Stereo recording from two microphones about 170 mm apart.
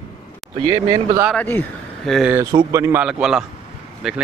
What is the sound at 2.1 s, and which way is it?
Speech, centre (ahead or behind).